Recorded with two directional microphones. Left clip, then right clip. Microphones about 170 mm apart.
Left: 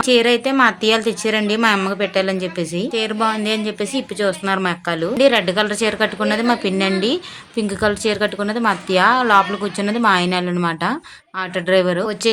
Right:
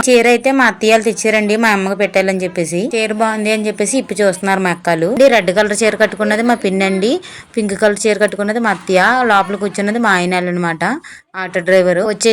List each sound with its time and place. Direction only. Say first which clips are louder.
0.0 s speech: right 5 dB; 15° right (ahead or behind)